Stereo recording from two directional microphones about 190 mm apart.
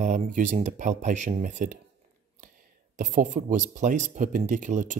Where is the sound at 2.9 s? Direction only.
40° right (ahead or behind).